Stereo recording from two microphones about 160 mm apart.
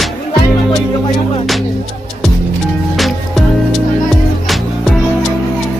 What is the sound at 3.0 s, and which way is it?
Music, centre (ahead or behind).